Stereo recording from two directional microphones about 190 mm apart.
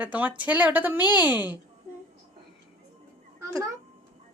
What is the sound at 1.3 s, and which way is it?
Speech, 10° right (ahead or behind).